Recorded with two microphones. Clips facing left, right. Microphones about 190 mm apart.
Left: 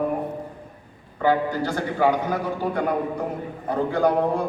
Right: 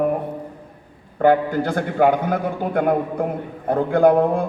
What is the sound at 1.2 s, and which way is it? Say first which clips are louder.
A man's voice: right 5 dB; 55° right (ahead or behind).